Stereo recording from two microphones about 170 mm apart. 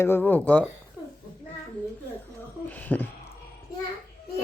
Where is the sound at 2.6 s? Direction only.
10° left (ahead or behind).